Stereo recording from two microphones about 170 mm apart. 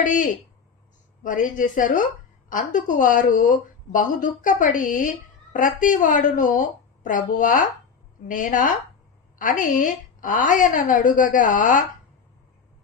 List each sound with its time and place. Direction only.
0.0 s a woman's voice: 50° left (ahead or behind)